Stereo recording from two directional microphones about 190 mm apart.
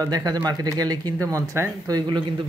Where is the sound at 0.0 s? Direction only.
20° right (ahead or behind).